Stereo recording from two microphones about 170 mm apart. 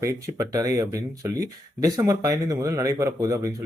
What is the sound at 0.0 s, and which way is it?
Speech, 20° right (ahead or behind).